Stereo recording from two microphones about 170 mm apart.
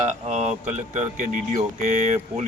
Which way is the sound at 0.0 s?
45° right (ahead or behind).